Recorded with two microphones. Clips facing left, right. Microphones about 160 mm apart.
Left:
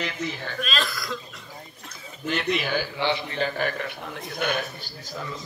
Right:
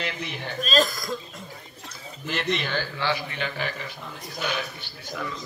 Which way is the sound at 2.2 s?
Centre (ahead or behind).